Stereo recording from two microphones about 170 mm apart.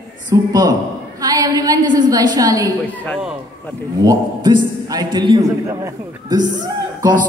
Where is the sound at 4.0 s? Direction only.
25° right (ahead or behind).